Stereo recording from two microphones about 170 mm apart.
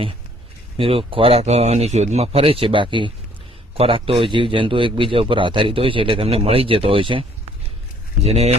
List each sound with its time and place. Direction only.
0.8 s a man's voice: 35° right (ahead or behind)